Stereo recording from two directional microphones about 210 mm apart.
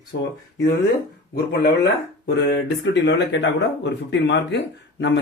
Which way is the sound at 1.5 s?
50° left (ahead or behind).